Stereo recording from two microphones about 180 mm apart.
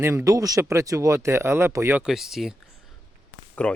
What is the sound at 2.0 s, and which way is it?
Speech, centre (ahead or behind).